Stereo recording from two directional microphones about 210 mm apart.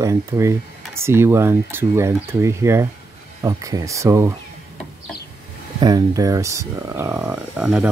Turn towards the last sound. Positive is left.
turn(degrees=-5)  # may be behind; listen again after turning